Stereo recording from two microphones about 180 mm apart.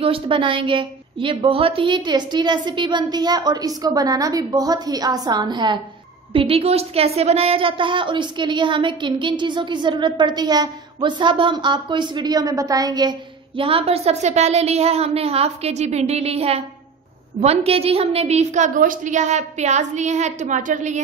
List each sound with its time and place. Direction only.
0.0 s a woman's voice: 30° right (ahead or behind)